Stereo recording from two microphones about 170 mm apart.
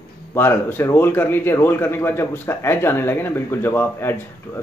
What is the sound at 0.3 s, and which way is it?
Speech, 15° left (ahead or behind).